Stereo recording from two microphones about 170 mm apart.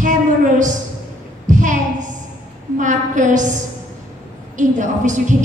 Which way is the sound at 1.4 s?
50° right (ahead or behind).